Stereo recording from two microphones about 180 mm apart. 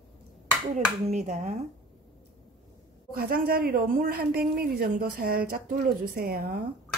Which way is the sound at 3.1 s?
55° right (ahead or behind).